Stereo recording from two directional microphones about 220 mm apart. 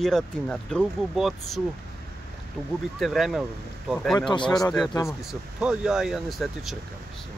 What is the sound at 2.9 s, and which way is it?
Speech, centre (ahead or behind).